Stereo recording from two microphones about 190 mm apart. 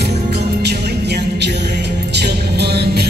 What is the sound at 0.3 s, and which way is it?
Music, 60° right (ahead or behind).